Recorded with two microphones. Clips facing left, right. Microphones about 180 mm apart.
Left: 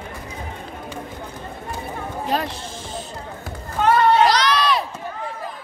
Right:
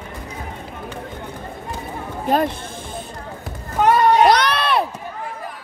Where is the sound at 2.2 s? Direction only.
50° right (ahead or behind).